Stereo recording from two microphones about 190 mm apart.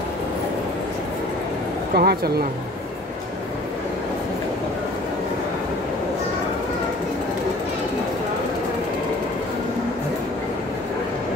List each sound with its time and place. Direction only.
2.0 s speech: 55° right (ahead or behind)